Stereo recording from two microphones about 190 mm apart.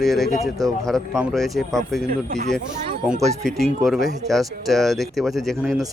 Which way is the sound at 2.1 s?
40° right (ahead or behind).